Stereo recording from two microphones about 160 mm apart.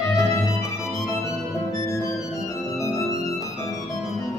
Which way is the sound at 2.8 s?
20° left (ahead or behind).